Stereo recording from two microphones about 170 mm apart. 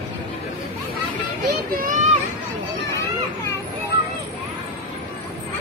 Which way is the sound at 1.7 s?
50° right (ahead or behind).